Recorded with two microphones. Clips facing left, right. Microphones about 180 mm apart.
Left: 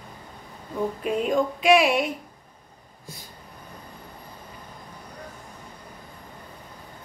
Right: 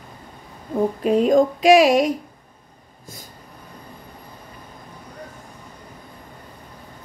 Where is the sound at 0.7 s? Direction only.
35° right (ahead or behind).